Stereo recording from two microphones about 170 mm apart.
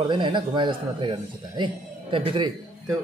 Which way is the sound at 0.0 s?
30° right (ahead or behind).